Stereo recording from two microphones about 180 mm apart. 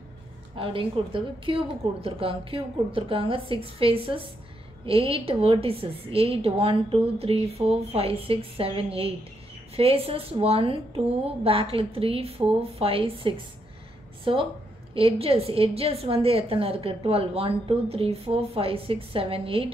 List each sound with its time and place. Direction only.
0.6 s a woman's voice: 30° right (ahead or behind)